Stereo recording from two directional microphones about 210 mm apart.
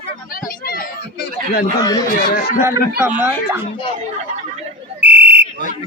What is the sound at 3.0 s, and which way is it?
Speech, 10° right (ahead or behind).